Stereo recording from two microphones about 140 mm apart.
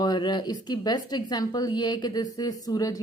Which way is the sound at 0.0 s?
30° left (ahead or behind).